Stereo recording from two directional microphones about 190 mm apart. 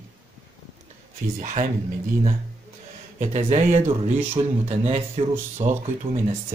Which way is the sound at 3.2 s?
35° right (ahead or behind).